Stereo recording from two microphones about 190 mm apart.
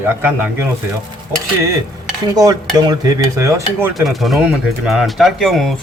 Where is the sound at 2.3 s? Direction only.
20° right (ahead or behind).